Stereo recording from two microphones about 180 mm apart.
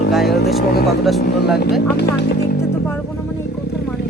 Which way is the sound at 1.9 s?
65° left (ahead or behind).